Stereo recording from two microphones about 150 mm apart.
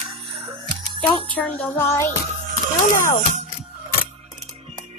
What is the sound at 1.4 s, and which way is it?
Child singing, 10° left (ahead or behind).